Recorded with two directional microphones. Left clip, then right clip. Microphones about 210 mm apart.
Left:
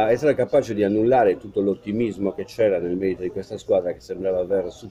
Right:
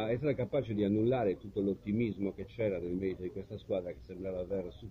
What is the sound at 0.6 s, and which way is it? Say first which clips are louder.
Speech: left 12 dB; 65° left (ahead or behind).